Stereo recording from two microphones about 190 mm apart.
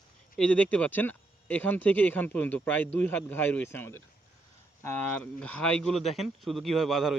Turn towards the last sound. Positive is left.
turn(degrees=0)  # may be behind; listen again after turning